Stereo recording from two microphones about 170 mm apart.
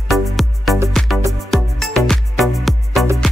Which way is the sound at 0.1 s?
Centre (ahead or behind).